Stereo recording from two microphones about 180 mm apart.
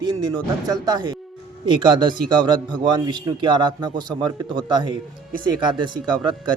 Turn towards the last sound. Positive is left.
turn(degrees=-25)  # may be behind; listen again after turning